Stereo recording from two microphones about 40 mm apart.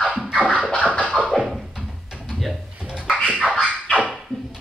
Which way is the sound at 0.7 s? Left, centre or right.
Left.